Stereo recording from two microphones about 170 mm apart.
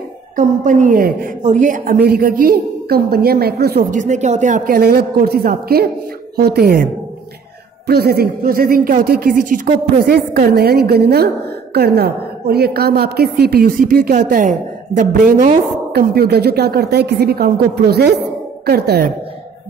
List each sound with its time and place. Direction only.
0.4 s a woman's voice: 50° right (ahead or behind)
2.0 s speech: 65° right (ahead or behind)
3.9 s speech: 45° right (ahead or behind)
10.0 s a woman's voice: 65° right (ahead or behind)